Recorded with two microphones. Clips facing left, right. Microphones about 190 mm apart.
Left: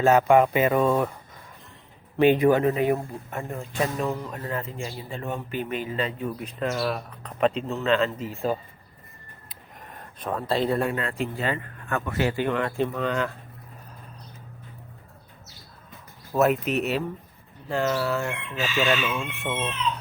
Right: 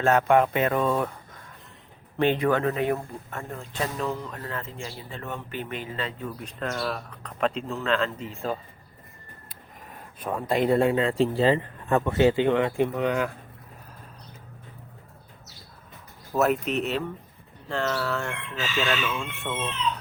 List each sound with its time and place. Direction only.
0.0 s speech: 5° left (ahead or behind)
2.1 s speech: 10° left (ahead or behind)
6.4 s speech: 5° left (ahead or behind)
10.2 s speech: 10° right (ahead or behind)
16.4 s speech: 5° left (ahead or behind)
18.9 s speech: 20° left (ahead or behind)
19.4 s speech: 10° left (ahead or behind)